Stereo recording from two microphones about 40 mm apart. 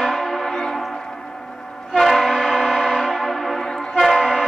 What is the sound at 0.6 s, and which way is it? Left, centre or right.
Train, centre.